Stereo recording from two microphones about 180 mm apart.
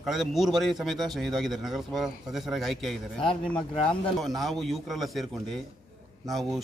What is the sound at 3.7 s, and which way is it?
Speech, 30° left (ahead or behind).